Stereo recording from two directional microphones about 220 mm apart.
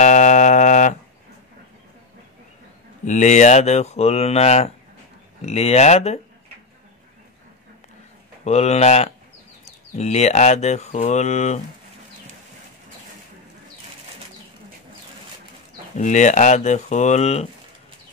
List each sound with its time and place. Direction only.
0.0 s a sound: 35° left (ahead or behind)
3.1 s speech: 35° left (ahead or behind)
8.5 s speech: 30° left (ahead or behind)
16.0 s speech: 35° left (ahead or behind)